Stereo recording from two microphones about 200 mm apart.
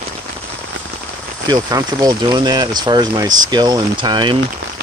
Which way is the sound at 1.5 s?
20° right (ahead or behind).